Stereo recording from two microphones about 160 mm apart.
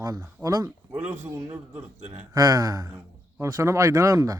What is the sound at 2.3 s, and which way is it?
Speech, 20° right (ahead or behind).